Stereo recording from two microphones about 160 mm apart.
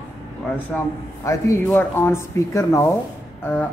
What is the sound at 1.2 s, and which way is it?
Speech, 20° left (ahead or behind).